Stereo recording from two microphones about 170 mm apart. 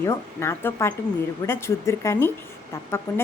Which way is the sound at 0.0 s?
15° left (ahead or behind).